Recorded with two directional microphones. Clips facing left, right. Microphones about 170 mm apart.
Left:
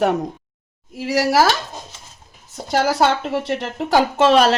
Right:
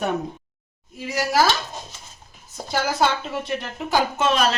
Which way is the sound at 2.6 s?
85° left.